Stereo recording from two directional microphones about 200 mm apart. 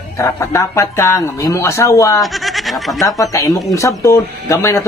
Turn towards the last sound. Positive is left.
turn(degrees=15)  # may be behind; listen again after turning